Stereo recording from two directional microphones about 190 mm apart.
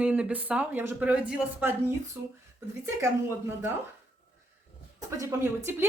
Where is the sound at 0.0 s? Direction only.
5° right (ahead or behind).